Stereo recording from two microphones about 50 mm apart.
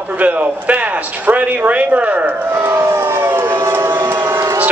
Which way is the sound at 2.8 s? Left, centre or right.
Right.